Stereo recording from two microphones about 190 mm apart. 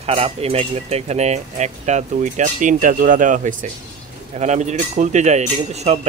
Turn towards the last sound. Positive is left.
turn(degrees=-35)  # may be behind; listen again after turning